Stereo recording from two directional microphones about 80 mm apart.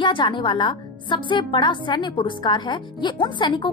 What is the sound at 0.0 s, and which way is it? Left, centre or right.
A woman's voice, left.